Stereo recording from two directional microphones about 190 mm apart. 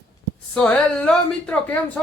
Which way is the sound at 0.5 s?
5° left (ahead or behind).